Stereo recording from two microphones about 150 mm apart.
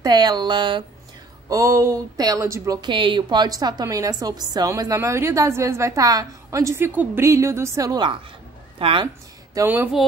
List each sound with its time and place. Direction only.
0.0 s speech: 25° right (ahead or behind)
1.5 s speech: 20° right (ahead or behind)
9.5 s speech: 20° right (ahead or behind)